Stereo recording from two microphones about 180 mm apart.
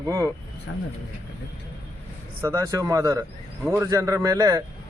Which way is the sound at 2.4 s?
15° right (ahead or behind).